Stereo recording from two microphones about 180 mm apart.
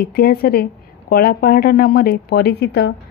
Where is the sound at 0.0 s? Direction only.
60° left (ahead or behind).